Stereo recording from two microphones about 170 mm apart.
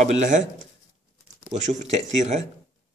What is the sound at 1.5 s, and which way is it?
Speech, 45° right (ahead or behind).